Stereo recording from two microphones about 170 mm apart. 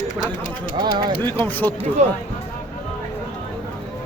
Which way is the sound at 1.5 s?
10° left (ahead or behind).